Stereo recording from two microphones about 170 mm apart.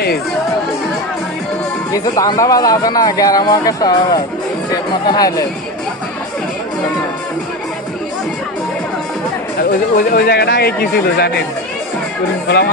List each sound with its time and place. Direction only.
1.9 s speech: 20° left (ahead or behind)
9.6 s speech: 60° left (ahead or behind)